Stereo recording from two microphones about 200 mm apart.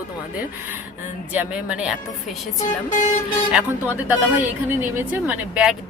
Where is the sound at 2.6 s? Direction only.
40° left (ahead or behind).